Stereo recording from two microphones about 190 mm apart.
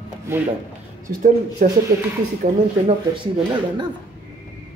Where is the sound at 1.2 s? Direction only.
45° right (ahead or behind).